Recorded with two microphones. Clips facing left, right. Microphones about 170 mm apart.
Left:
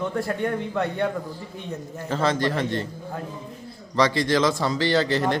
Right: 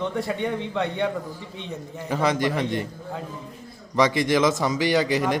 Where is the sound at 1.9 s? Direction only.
15° right (ahead or behind).